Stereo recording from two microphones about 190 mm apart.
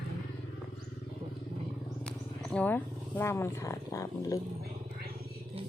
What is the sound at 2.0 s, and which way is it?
Wild animals, 5° left (ahead or behind).